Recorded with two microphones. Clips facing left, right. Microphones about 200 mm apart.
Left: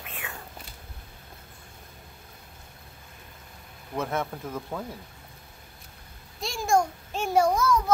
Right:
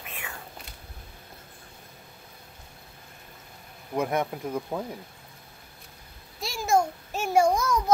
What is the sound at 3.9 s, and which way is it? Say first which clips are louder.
Speech: right 3 dB; 15° right (ahead or behind).